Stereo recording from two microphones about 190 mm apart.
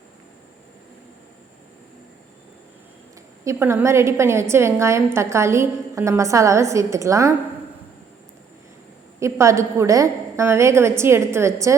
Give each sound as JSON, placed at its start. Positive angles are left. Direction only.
{"t": 3.4, "sound": "a woman's voice", "side_deg": -15}
{"t": 9.2, "sound": "a woman's voice", "side_deg": -15}